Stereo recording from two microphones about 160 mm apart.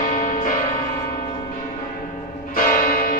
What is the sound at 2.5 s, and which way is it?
Church bell, 60° left (ahead or behind).